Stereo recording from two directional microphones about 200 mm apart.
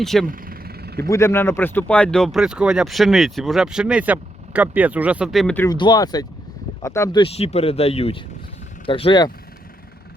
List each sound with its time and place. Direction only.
0.0 s speech: centre (ahead or behind)
0.3 s vehicle: 45° right (ahead or behind)
1.0 s speech: 15° left (ahead or behind)
5.6 s speech: 20° left (ahead or behind)
7.2 s speech: 30° left (ahead or behind)